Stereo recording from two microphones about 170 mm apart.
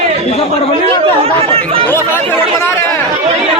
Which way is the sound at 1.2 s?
35° right (ahead or behind).